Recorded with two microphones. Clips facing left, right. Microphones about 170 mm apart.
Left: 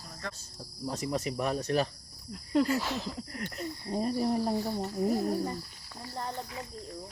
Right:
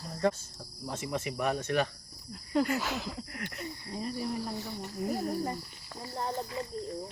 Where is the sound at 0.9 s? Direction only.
40° left (ahead or behind).